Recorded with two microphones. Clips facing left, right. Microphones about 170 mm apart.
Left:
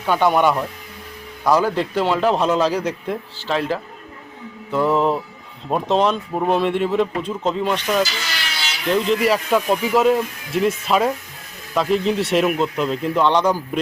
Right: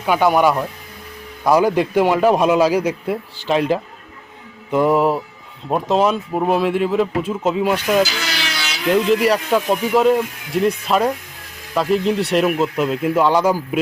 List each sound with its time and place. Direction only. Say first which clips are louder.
0.0 s a man's voice: right 2 dB; 10° right (ahead or behind)
8.1 s a sound: right 4 dB; 70° right (ahead or behind)
8.9 s speech: right 3 dB; centre (ahead or behind)